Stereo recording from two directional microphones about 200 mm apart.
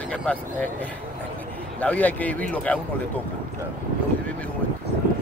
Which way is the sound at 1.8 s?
5° left (ahead or behind).